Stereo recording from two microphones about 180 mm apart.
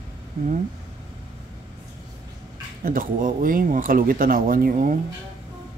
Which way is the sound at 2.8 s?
50° right (ahead or behind).